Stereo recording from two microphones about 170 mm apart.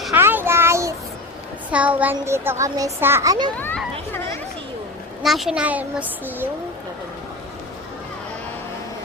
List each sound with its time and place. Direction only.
0.1 s a sound: 10° right (ahead or behind)
1.7 s a woman's voice: 10° right (ahead or behind)
3.6 s a child's voice: 10° left (ahead or behind)
5.2 s a woman's voice: centre (ahead or behind)